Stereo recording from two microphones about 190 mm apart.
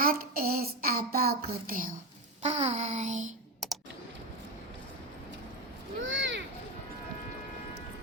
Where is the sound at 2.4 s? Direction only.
35° right (ahead or behind).